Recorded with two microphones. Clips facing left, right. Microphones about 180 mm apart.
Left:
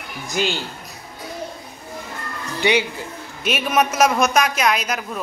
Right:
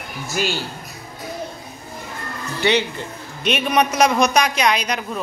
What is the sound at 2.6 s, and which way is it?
A man's voice, 10° left (ahead or behind).